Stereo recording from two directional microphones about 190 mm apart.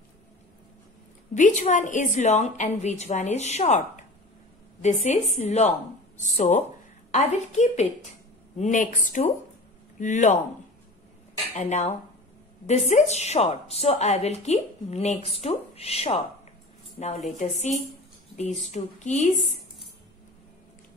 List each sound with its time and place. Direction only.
1.3 s a woman's voice: 40° left (ahead or behind)
11.5 s a woman's voice: 35° left (ahead or behind)